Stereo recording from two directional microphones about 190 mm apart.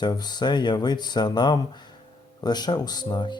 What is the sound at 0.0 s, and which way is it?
Speech, 20° left (ahead or behind).